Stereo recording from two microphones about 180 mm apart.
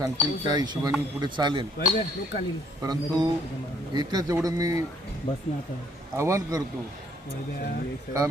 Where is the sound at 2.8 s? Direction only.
20° right (ahead or behind).